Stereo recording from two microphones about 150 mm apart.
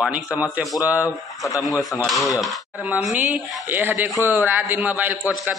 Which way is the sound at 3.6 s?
15° right (ahead or behind).